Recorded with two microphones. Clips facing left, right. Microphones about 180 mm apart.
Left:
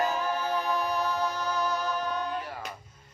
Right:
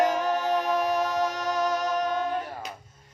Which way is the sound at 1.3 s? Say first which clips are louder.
Right 3 dB; 90° right.